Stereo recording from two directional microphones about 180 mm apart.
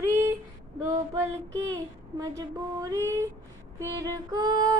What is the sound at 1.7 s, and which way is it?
Female singing, 20° right (ahead or behind).